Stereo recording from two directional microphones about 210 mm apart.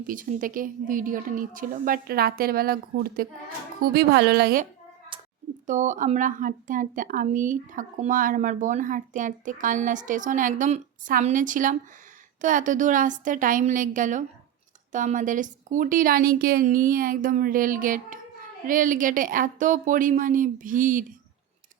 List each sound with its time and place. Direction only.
0.1 s a woman's voice: 40° right (ahead or behind)
5.1 s a sound: 25° right (ahead or behind)
5.6 s speech: 35° right (ahead or behind)